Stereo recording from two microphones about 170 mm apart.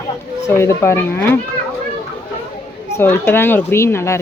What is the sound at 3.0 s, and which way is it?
Speech, 15° left (ahead or behind).